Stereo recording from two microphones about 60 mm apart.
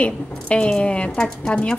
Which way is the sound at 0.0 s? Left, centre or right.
Left.